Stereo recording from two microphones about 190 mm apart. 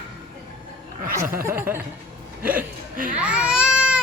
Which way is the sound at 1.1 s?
15° right (ahead or behind).